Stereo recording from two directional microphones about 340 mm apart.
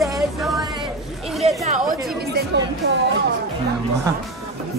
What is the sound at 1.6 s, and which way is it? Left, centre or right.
Chatter, right.